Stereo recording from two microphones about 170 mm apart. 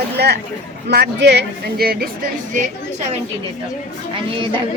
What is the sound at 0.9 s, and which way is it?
Speech, 80° right.